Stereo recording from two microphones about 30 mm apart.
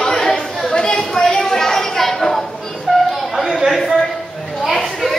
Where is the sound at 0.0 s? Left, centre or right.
Centre.